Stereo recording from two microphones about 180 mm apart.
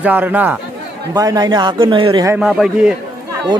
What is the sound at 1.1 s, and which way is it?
Speech, 20° right (ahead or behind).